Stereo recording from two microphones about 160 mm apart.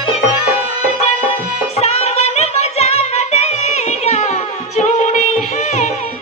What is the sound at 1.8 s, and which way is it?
Music, 40° left (ahead or behind).